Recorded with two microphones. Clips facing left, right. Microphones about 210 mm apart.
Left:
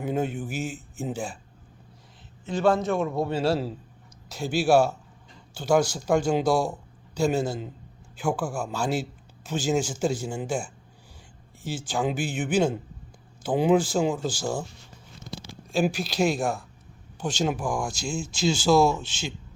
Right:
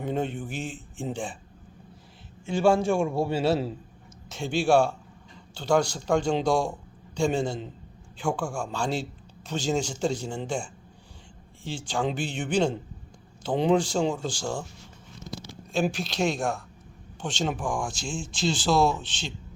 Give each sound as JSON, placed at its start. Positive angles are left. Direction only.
{"t": 0.0, "sound": "speech", "side_deg": 5}
{"t": 2.5, "sound": "a man's voice", "side_deg": -30}
{"t": 3.3, "sound": "speech", "side_deg": -5}
{"t": 15.7, "sound": "speech", "side_deg": 0}